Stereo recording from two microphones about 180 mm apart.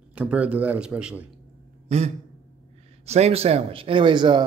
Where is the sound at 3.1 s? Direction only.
35° right (ahead or behind).